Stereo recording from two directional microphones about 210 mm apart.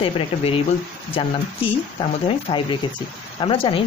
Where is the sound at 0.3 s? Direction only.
30° left (ahead or behind).